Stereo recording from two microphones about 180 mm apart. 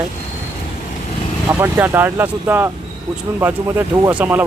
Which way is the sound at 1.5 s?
10° right (ahead or behind).